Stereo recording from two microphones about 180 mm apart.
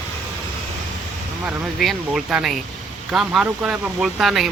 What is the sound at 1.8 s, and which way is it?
Speech, centre (ahead or behind).